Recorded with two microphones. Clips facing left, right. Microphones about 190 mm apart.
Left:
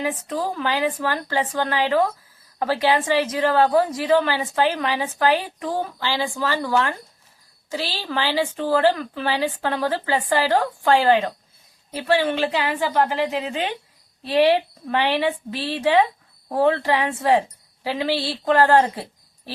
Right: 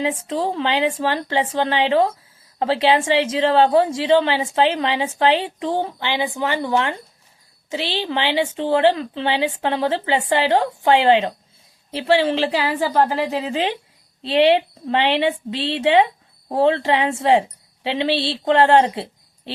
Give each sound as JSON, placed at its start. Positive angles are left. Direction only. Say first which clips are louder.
{"t": 0.0, "sound": "a woman's voice", "louder": "right 3 dB", "side_deg": -25}